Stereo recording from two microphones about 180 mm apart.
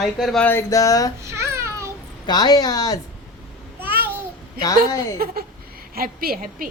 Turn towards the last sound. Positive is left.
turn(degrees=-55)  # may be behind; listen again after turning